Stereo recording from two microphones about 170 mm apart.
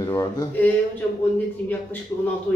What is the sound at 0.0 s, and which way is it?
Speech, 20° left (ahead or behind).